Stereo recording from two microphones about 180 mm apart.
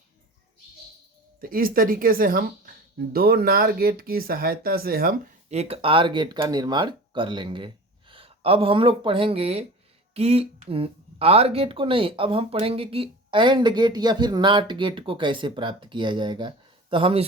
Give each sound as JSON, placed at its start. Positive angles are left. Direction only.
{"t": 1.4, "sound": "speech", "side_deg": -55}
{"t": 5.5, "sound": "speech", "side_deg": -35}